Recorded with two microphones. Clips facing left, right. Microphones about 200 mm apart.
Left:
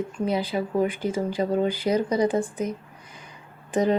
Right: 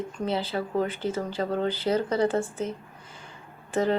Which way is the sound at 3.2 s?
15° left (ahead or behind).